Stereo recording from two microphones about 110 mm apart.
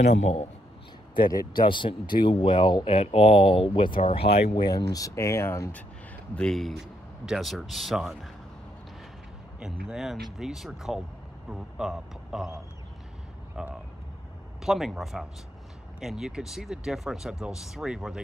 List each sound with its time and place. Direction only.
0.0 s a man's voice: 90° left
1.3 s speech: 45° left (ahead or behind)
4.6 s speech: 35° left (ahead or behind)
6.3 s speech: 5° left (ahead or behind)
9.6 s speech: 5° right (ahead or behind)
13.6 s speech: 5° right (ahead or behind)